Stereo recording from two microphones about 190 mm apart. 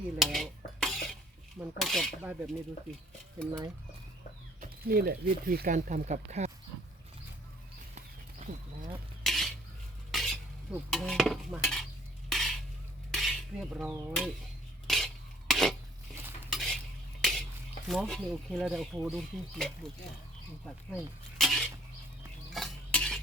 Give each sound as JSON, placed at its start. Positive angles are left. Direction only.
{"t": 0.2, "sound": "dishes", "side_deg": 0}
{"t": 1.8, "sound": "speech", "side_deg": 0}
{"t": 4.9, "sound": "speech", "side_deg": -50}
{"t": 9.2, "sound": "cutlery", "side_deg": 0}
{"t": 10.1, "sound": "stir", "side_deg": 0}
{"t": 10.9, "sound": "speech", "side_deg": 0}
{"t": 12.3, "sound": "dishes", "side_deg": 0}
{"t": 13.1, "sound": "cutlery", "side_deg": 0}
{"t": 14.8, "sound": "filing", "side_deg": 0}
{"t": 16.5, "sound": "cutlery", "side_deg": 0}
{"t": 17.2, "sound": "a sound", "side_deg": 0}
{"t": 17.8, "sound": "speech", "side_deg": 0}
{"t": 21.3, "sound": "a sound", "side_deg": 0}
{"t": 22.4, "sound": "stir", "side_deg": 0}